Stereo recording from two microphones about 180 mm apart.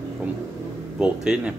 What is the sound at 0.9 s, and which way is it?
Speech, 5° right (ahead or behind).